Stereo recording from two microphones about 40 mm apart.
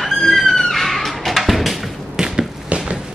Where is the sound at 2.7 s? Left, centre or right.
Right.